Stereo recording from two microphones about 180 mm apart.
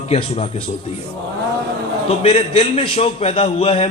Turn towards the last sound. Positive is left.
turn(degrees=35)  # may be behind; listen again after turning